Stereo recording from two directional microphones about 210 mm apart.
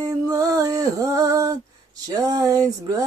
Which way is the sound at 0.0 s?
15° right (ahead or behind).